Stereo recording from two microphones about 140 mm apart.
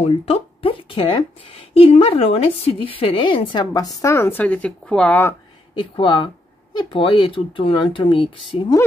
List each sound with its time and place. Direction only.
0.0 s a sound: 45° left (ahead or behind)
1.7 s speech: 45° left (ahead or behind)
4.0 s speech: 20° left (ahead or behind)
5.8 s speech: 35° left (ahead or behind)